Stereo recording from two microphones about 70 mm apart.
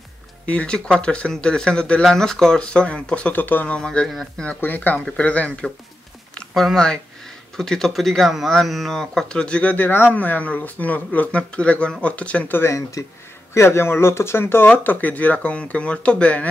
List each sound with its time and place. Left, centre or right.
0.5 s speech: centre
3.3 s speech: left
4.6 s speech: left
6.5 s speech: centre
13.5 s speech: left; by 16.4 s centre